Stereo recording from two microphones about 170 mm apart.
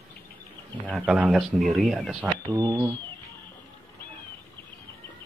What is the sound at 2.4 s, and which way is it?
Speech, 25° right (ahead or behind).